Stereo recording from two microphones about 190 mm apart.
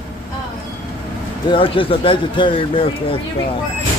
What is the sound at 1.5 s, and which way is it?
Speech, 25° left (ahead or behind).